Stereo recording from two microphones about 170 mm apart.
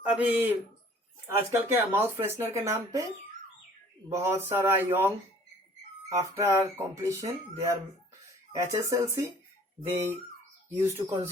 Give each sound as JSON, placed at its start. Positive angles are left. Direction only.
{"t": 0.0, "sound": "speech", "side_deg": -10}
{"t": 4.1, "sound": "speech", "side_deg": -15}